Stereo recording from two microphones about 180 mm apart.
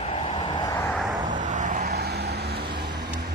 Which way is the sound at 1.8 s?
65° right (ahead or behind).